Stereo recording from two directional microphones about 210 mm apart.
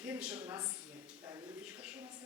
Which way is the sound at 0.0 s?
5° right (ahead or behind).